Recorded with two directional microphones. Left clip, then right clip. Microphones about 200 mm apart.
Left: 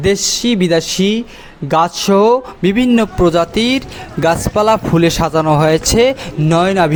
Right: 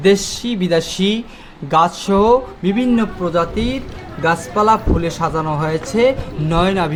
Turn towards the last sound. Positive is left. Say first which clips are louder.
# left 5 dB
turn(degrees=35)  # may be behind; listen again after turning